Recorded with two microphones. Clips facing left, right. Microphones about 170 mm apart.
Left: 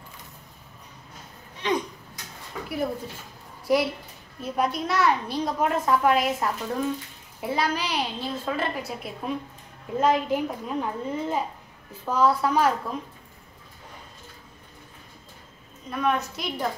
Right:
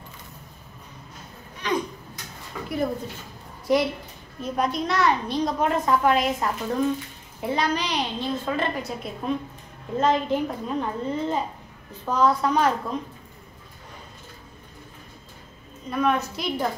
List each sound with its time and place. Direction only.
1.6 s a sound: 25° left (ahead or behind)
3.6 s a woman's voice: 5° left (ahead or behind)
15.9 s a woman's voice: centre (ahead or behind)